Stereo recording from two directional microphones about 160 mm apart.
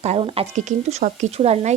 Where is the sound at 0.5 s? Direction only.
50° right (ahead or behind).